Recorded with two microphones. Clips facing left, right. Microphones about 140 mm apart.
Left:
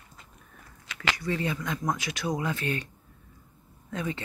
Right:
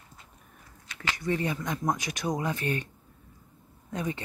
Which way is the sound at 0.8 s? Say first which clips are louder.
Left 4 dB; 90° left.